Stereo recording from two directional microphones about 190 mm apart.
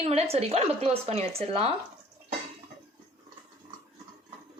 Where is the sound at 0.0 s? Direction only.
35° right (ahead or behind).